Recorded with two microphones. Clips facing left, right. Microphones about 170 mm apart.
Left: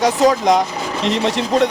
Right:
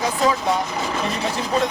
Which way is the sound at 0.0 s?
80° left.